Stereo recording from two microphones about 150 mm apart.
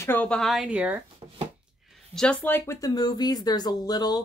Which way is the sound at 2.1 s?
10° left (ahead or behind).